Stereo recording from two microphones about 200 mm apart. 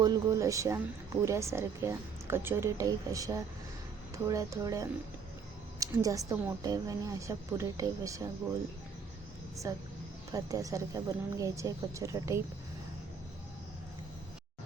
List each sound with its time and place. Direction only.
0.0 s a woman's voice: 15° right (ahead or behind)
9.7 s a woman's voice: 15° right (ahead or behind)